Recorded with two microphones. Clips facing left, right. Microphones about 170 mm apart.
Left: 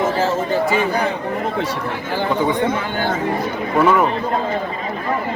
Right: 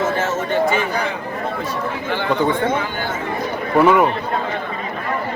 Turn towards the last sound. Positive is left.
turn(degrees=-5)  # may be behind; listen again after turning